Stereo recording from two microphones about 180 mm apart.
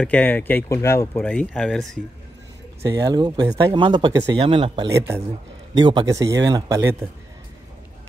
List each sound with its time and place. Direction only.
0.0 s speech: 10° left (ahead or behind)
2.9 s speech: 20° right (ahead or behind)
4.9 s speech: 15° right (ahead or behind)
5.8 s speech: 25° right (ahead or behind)